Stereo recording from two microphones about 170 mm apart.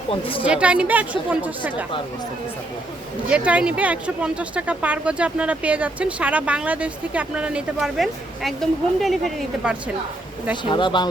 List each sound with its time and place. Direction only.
0.1 s a woman's voice: 30° left (ahead or behind)
0.4 s speech: 5° right (ahead or behind)
3.2 s speech: 5° right (ahead or behind)
10.6 s speech: 25° left (ahead or behind)